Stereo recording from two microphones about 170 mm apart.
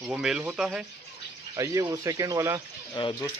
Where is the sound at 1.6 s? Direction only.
20° right (ahead or behind).